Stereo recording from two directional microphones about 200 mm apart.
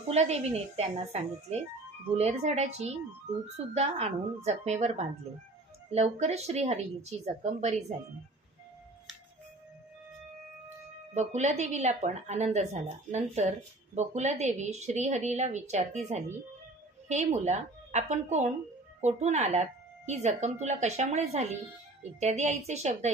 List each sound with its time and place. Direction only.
0.1 s a woman's voice: 35° right (ahead or behind)
11.1 s a woman's voice: 35° right (ahead or behind)